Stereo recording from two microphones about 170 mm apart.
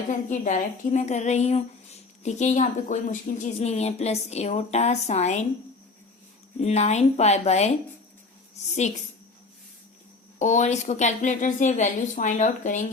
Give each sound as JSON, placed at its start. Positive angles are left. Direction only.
{"t": 0.1, "sound": "a woman's voice", "side_deg": 45}
{"t": 6.6, "sound": "a woman's voice", "side_deg": 40}
{"t": 10.3, "sound": "speech", "side_deg": 45}